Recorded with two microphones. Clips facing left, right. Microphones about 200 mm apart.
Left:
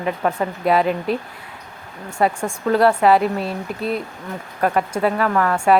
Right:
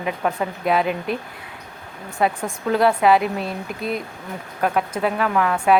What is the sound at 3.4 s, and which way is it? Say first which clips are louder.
Speech: left 2 dB; 35° left (ahead or behind).